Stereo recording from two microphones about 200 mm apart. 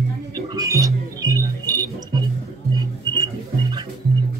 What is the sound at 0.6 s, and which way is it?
Music, 15° right (ahead or behind).